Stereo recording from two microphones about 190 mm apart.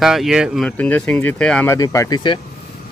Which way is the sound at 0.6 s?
10° left (ahead or behind).